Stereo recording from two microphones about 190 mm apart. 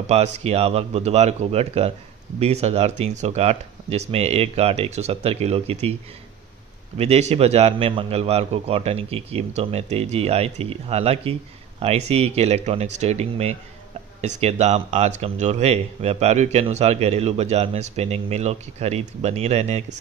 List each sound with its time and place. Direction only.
0.0 s speech: 35° right (ahead or behind)
7.0 s speech: 35° right (ahead or behind)